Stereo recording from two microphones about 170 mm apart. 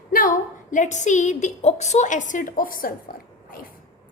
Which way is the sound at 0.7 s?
45° left (ahead or behind).